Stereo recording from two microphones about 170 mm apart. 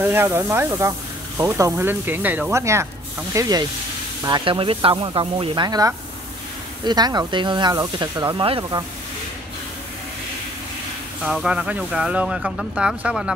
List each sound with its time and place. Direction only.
0.0 s speech: 10° right (ahead or behind)
11.2 s speech: 5° right (ahead or behind)